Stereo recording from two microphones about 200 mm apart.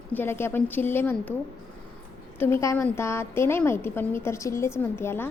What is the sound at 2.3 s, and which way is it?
A woman's voice, 15° left (ahead or behind).